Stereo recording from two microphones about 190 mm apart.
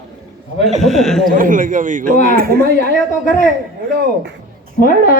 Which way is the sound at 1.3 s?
45° right (ahead or behind).